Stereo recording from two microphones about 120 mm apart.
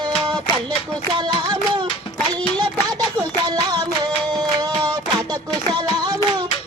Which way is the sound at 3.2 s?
35° right (ahead or behind).